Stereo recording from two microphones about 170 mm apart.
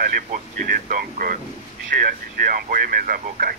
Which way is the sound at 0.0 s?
55° right (ahead or behind).